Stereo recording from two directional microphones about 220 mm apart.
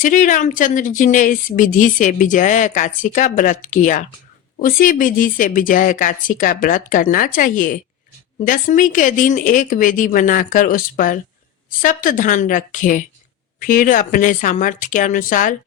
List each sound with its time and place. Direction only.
0.0 s speech: 35° left (ahead or behind)